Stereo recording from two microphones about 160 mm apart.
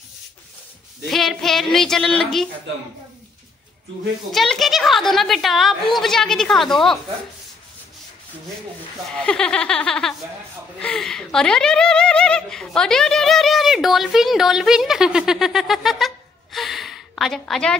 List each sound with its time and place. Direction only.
1.0 s a woman's voice: centre (ahead or behind)
4.3 s a woman's voice: centre (ahead or behind)
9.1 s a woman's voice: 5° left (ahead or behind)
16.5 s a sound: centre (ahead or behind)